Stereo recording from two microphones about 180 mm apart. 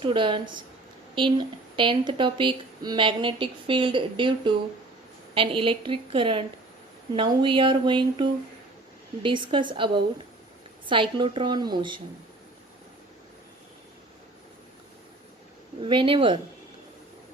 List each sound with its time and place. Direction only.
0.0 s speech: 25° right (ahead or behind)
15.8 s speech: 25° right (ahead or behind)